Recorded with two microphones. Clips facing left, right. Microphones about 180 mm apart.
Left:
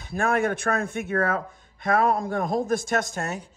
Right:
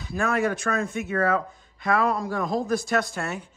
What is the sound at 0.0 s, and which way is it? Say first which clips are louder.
Speech: left 1 dB; 55° left (ahead or behind).